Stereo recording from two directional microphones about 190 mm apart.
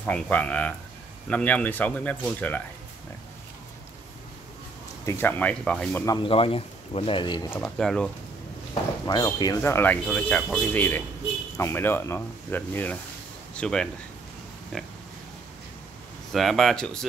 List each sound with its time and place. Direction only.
0.0 s speech: 10° left (ahead or behind)
5.0 s speech: 10° left (ahead or behind)
6.0 s speech: 25° left (ahead or behind)
7.8 s speech: centre (ahead or behind)
9.0 s speech: 20° left (ahead or behind); by 13.8 s 5° left (ahead or behind)
16.3 s speech: centre (ahead or behind)